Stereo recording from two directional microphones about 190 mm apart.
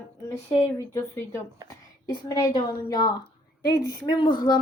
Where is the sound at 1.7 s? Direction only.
15° left (ahead or behind).